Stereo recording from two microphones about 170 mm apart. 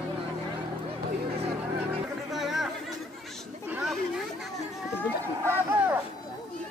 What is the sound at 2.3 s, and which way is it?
Chatter, centre (ahead or behind).